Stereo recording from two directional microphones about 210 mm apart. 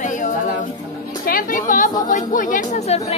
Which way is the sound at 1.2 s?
40° left (ahead or behind).